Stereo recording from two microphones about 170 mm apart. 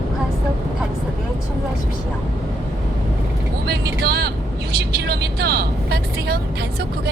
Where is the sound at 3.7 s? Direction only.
70° right (ahead or behind).